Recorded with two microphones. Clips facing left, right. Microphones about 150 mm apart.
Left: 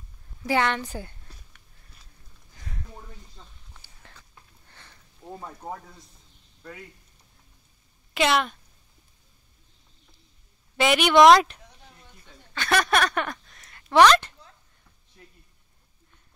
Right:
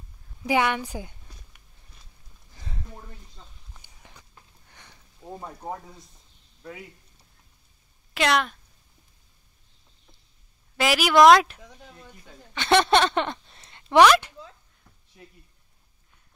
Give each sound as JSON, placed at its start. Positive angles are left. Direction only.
{"t": 0.4, "sound": "a woman's voice", "side_deg": -10}
{"t": 3.7, "sound": "a sound", "side_deg": -15}
{"t": 5.3, "sound": "speech", "side_deg": -5}
{"t": 8.1, "sound": "speech", "side_deg": 0}
{"t": 10.8, "sound": "speech", "side_deg": 0}
{"t": 12.5, "sound": "speech", "side_deg": -25}
{"t": 13.9, "sound": "a woman's voice", "side_deg": -10}